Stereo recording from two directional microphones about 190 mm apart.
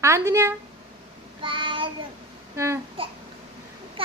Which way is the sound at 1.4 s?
25° right (ahead or behind).